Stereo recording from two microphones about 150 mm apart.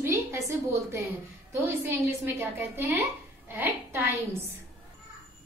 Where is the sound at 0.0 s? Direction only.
20° right (ahead or behind).